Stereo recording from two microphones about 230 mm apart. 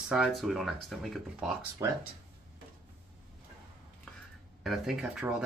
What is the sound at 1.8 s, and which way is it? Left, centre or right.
Speech, centre.